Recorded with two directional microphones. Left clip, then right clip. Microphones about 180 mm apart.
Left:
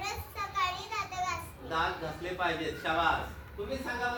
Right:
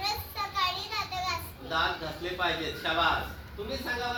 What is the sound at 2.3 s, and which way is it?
Speech, centre (ahead or behind).